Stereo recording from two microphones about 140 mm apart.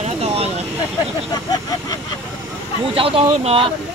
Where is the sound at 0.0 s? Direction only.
50° right (ahead or behind).